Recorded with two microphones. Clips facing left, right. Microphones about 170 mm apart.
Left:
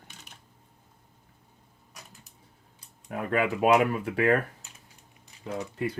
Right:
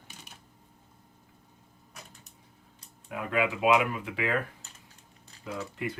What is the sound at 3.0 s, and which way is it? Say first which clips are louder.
Speech: left 2 dB; 45° left (ahead or behind).